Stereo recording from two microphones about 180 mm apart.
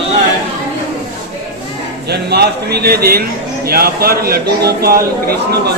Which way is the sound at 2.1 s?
65° right (ahead or behind).